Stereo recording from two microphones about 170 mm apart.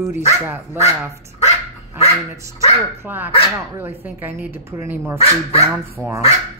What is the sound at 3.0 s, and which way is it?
Speech, 10° right (ahead or behind).